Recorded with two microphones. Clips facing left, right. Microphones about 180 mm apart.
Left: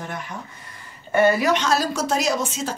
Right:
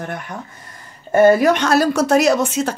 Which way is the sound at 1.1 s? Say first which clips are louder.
Right 6 dB; 45° right (ahead or behind).